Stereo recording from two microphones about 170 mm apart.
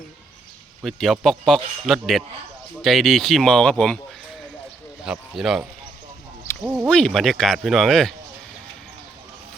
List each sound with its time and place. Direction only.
0.8 s speech: centre (ahead or behind)
5.0 s speech: 5° right (ahead or behind)
6.7 s speech: 5° left (ahead or behind)